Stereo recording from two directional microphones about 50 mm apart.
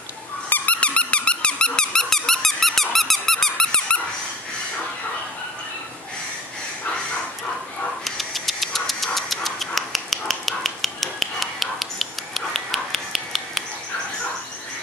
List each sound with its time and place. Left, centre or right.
0.5 s dog: left; by 4.0 s centre
8.0 s dog: centre